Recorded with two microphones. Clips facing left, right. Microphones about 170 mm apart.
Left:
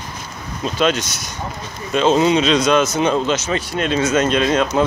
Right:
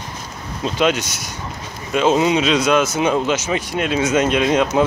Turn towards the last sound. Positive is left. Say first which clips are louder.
# even
turn(degrees=-15)  # may be behind; listen again after turning